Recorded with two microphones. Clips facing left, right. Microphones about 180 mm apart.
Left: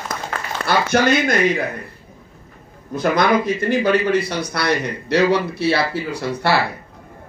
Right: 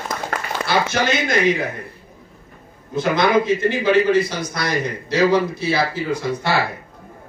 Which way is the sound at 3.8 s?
65° left (ahead or behind).